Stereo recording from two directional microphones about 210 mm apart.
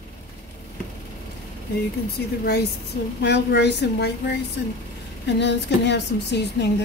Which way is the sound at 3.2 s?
55° left (ahead or behind).